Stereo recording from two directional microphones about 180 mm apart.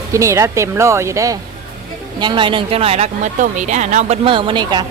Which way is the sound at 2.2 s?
25° right (ahead or behind).